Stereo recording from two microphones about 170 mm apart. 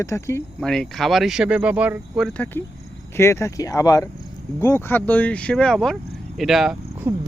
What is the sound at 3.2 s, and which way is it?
Speech, 15° left (ahead or behind).